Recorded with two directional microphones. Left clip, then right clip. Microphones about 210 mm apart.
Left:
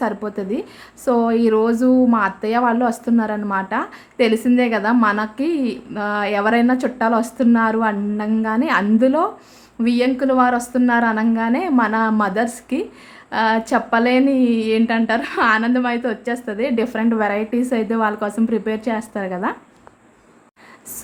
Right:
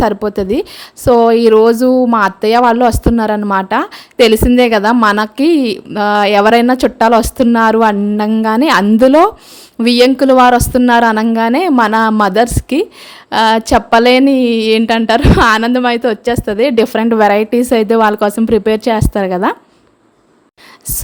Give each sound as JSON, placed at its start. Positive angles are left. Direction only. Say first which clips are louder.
{"t": 0.0, "sound": "a woman's voice", "louder": "right 10 dB", "side_deg": -40}